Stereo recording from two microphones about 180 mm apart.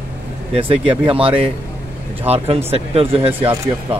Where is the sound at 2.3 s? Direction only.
35° right (ahead or behind).